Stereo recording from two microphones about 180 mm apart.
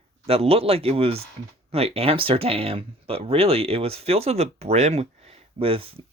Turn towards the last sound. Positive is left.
turn(degrees=-30)  # may be behind; listen again after turning